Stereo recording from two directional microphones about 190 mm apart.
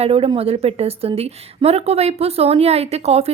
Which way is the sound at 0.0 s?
30° right (ahead or behind).